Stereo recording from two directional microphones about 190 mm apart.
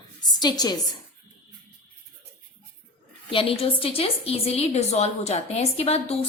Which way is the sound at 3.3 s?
25° left (ahead or behind).